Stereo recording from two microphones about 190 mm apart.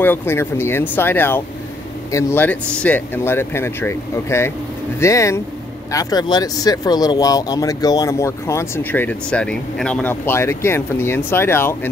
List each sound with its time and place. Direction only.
0.0 s speech: 10° left (ahead or behind)